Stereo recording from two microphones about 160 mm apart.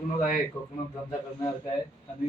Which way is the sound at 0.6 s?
20° left (ahead or behind).